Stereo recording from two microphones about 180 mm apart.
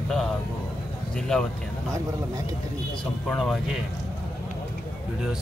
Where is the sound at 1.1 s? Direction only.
5° left (ahead or behind).